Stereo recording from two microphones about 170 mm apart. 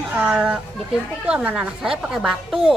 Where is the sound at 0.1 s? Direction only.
5° right (ahead or behind).